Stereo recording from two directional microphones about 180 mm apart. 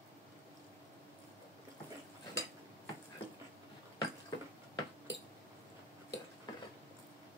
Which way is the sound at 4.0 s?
25° left (ahead or behind).